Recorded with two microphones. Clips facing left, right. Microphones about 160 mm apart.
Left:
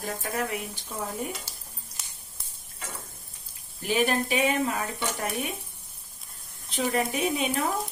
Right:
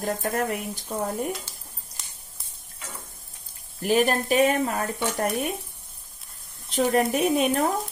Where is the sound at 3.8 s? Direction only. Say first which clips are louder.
Right 4 dB; 45° right (ahead or behind).